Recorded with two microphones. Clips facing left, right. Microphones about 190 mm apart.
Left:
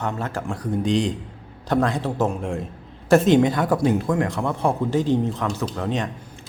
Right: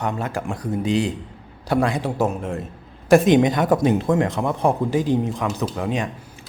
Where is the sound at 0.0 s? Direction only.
15° right (ahead or behind).